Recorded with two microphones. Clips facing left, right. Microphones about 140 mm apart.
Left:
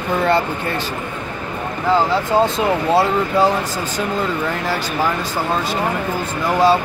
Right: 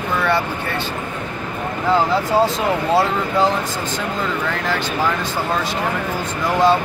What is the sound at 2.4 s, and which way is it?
Speech, centre (ahead or behind).